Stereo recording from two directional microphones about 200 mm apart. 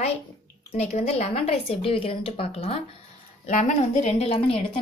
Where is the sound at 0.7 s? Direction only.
35° left (ahead or behind).